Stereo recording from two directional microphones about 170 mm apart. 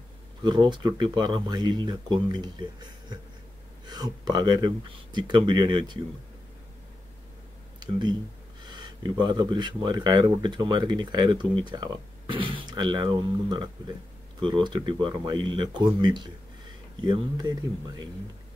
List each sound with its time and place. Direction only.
0.4 s speech: 25° right (ahead or behind)
7.8 s speech: 25° right (ahead or behind)